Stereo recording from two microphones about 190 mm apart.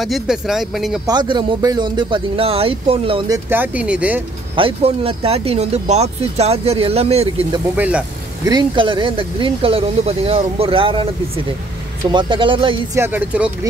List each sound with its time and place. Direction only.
0.0 s speech: centre (ahead or behind)
1.0 s speech: 25° right (ahead or behind)
3.4 s speech: 10° right (ahead or behind)
4.6 s speech: 30° right (ahead or behind)
7.7 s speech: 10° right (ahead or behind)
8.5 s speech: 25° right (ahead or behind)
12.9 s speech: 10° right (ahead or behind)